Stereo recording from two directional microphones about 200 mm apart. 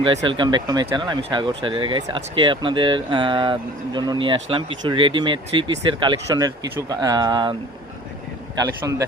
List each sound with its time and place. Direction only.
0.0 s speech: 25° right (ahead or behind)
8.5 s speech: 15° right (ahead or behind)